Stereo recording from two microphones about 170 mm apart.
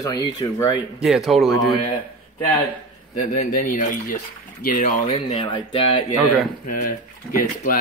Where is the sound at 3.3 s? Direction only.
50° left (ahead or behind).